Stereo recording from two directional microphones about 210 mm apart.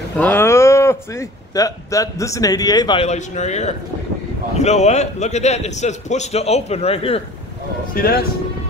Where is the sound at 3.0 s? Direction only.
35° left (ahead or behind).